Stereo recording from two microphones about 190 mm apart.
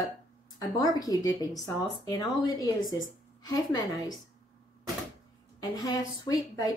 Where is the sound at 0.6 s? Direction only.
20° left (ahead or behind).